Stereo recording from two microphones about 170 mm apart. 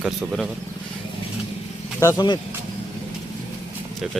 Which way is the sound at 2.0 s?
20° left (ahead or behind).